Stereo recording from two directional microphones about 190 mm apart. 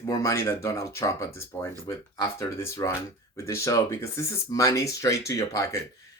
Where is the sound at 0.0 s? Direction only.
15° left (ahead or behind).